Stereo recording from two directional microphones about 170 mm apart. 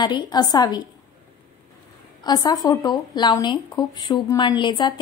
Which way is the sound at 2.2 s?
25° left (ahead or behind).